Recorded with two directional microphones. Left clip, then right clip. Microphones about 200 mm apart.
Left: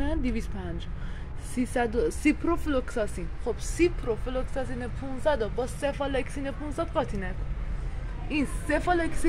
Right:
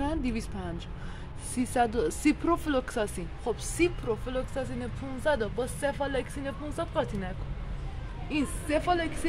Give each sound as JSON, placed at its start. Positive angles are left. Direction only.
{"t": 0.0, "sound": "vehicle", "side_deg": -5}
{"t": 1.5, "sound": "speech", "side_deg": -5}
{"t": 8.6, "sound": "a woman's voice", "side_deg": 30}